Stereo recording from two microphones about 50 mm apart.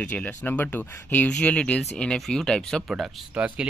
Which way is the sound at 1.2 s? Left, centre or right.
Left.